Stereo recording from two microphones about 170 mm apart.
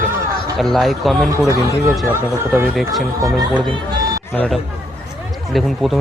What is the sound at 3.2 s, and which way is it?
Speech, 25° right (ahead or behind).